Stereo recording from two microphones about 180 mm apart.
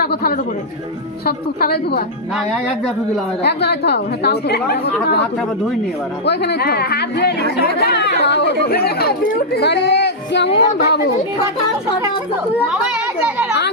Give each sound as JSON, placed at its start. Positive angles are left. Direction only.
{"t": 0.0, "sound": "a man's voice", "side_deg": 60}
{"t": 1.6, "sound": "a woman's voice", "side_deg": 60}
{"t": 3.4, "sound": "a woman's voice", "side_deg": 65}
{"t": 6.2, "sound": "a woman's voice", "side_deg": 65}
{"t": 8.7, "sound": "speech", "side_deg": 60}